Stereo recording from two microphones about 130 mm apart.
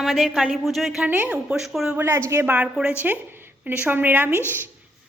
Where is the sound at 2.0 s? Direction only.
20° right (ahead or behind).